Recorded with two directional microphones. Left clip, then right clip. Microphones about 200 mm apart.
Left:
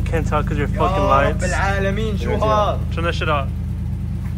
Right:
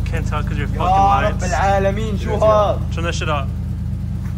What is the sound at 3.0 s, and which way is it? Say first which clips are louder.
Speech: left 2 dB; 10° right (ahead or behind).